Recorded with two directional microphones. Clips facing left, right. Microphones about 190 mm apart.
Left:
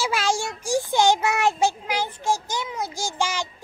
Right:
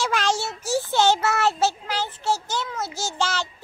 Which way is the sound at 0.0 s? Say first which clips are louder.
Even; 5° left (ahead or behind).